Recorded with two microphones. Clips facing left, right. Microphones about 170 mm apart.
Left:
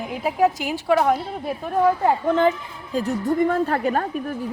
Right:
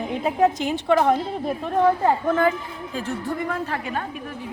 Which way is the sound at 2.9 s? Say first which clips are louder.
Left 7 dB; 40° left (ahead or behind).